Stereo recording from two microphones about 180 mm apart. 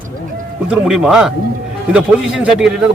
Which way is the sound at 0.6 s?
5° right (ahead or behind).